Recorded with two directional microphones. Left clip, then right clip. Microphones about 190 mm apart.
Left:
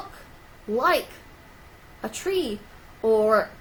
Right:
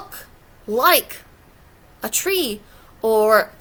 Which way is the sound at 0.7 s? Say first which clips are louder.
Right 6 dB; 25° right (ahead or behind).